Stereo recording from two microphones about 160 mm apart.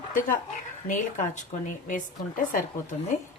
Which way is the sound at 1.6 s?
55° left (ahead or behind).